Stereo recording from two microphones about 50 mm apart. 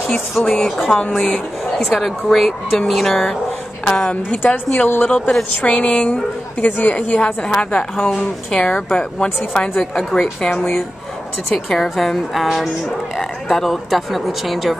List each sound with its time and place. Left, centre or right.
0.1 s a woman's voice: centre
1.9 s a woman's voice: centre
4.3 s a woman's voice: left
5.6 s a woman's voice: left
6.6 s a woman's voice: left
7.4 s a woman's voice: centre
9.5 s a woman's voice: centre
11.5 s speech: centre